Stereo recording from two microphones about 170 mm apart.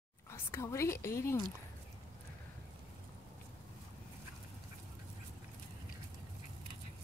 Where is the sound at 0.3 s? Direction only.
15° left (ahead or behind).